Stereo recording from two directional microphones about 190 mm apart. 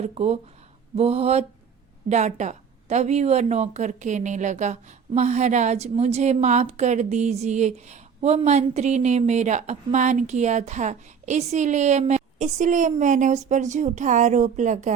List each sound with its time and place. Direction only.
0.0 s a woman's voice: 35° right (ahead or behind)